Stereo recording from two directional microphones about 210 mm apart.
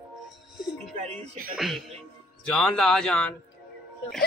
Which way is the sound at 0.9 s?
30° right (ahead or behind).